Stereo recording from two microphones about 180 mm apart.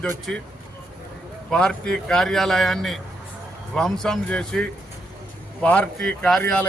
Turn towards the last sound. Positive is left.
turn(degrees=5)  # may be behind; listen again after turning